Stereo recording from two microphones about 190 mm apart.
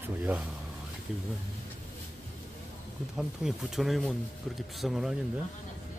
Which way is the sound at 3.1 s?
Centre (ahead or behind).